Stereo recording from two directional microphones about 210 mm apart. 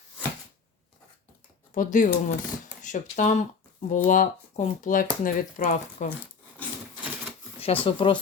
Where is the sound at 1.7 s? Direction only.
40° left (ahead or behind).